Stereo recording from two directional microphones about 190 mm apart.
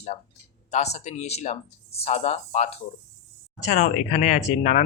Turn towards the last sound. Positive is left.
turn(degrees=40)  # may be behind; listen again after turning